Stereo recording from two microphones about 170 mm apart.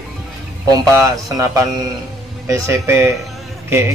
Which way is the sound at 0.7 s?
20° right (ahead or behind).